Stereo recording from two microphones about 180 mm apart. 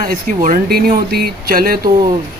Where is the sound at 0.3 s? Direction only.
45° right (ahead or behind).